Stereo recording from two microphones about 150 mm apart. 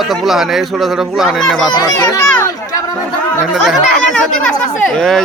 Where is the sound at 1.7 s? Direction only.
25° left (ahead or behind).